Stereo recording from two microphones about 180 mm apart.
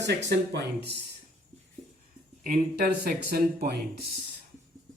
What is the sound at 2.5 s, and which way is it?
Speech, 55° right (ahead or behind).